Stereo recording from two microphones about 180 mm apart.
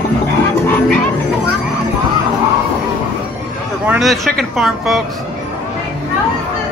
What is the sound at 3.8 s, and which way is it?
Speech, centre (ahead or behind).